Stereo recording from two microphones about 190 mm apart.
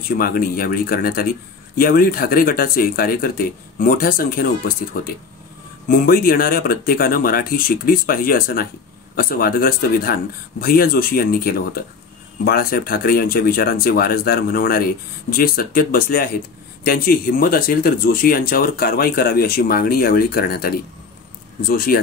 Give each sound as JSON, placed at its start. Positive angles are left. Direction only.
{"t": 0.2, "sound": "speech", "side_deg": 50}